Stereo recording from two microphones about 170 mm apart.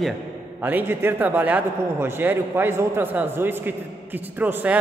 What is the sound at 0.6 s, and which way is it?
A man's voice, 10° right (ahead or behind).